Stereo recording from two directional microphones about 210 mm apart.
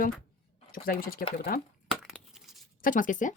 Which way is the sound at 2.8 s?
40° left (ahead or behind).